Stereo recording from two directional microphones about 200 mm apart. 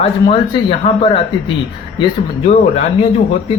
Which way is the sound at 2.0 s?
30° left (ahead or behind).